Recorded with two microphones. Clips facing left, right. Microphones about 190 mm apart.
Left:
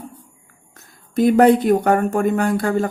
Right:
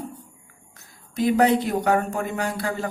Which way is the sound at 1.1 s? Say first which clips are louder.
Left 6 dB; 50° left (ahead or behind).